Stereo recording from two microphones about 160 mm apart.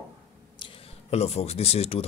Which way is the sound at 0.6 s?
40° left (ahead or behind).